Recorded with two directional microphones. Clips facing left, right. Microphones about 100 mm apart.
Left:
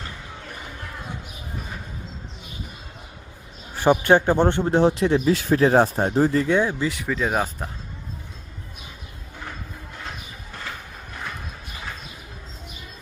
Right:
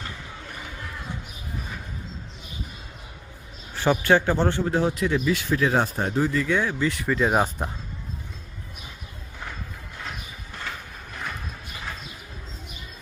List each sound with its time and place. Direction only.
3.8 s speech: 20° left (ahead or behind); by 6.5 s 35° left (ahead or behind)
6.5 s speech: 20° left (ahead or behind)
7.0 s speech: centre (ahead or behind)